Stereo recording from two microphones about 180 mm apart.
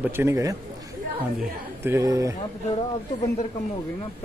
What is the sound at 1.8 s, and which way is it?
Speech, 15° right (ahead or behind).